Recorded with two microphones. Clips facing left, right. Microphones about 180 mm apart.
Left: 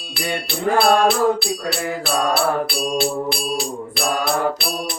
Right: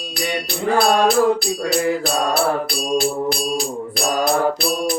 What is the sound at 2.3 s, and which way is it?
Music, 45° right (ahead or behind).